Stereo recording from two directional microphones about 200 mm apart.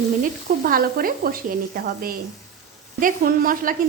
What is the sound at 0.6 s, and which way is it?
Sizzle, 45° right (ahead or behind).